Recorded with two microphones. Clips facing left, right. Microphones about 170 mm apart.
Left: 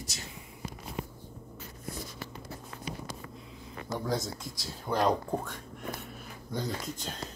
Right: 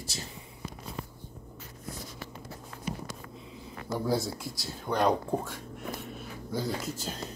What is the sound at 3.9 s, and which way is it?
Speech, 10° right (ahead or behind).